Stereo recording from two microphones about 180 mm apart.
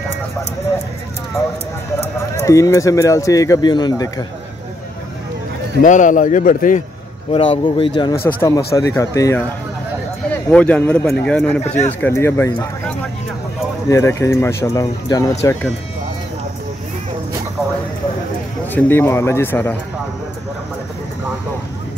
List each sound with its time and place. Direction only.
2.3 s speech: 15° left (ahead or behind)
5.8 s a man's voice: 45° left (ahead or behind)
7.3 s speech: 30° left (ahead or behind)
10.5 s speech: 5° left (ahead or behind)
11.6 s speech: 40° left (ahead or behind)
12.0 s speech: 15° left (ahead or behind)
13.8 s speech: 15° left (ahead or behind)
18.7 s speech: 10° left (ahead or behind)